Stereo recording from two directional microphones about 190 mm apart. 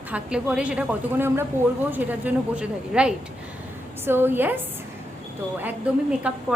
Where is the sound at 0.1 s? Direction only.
5° right (ahead or behind).